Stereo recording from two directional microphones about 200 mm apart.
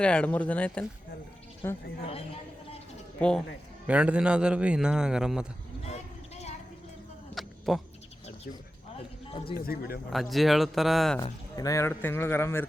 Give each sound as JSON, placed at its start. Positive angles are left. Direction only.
{"t": 0.0, "sound": "a man's voice", "side_deg": 5}
{"t": 2.0, "sound": "a sound", "side_deg": 30}
{"t": 3.2, "sound": "speech", "side_deg": 5}
{"t": 3.8, "sound": "a man's voice", "side_deg": -5}
{"t": 5.9, "sound": "a sound", "side_deg": 35}
{"t": 7.3, "sound": "a sound", "side_deg": 0}
{"t": 9.6, "sound": "speech", "side_deg": 50}
{"t": 10.1, "sound": "a man's voice", "side_deg": 0}
{"t": 11.2, "sound": "a man's voice", "side_deg": 15}